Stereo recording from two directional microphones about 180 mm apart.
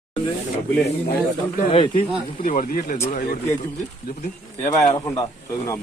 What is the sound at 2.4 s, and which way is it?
Speech, 50° left (ahead or behind).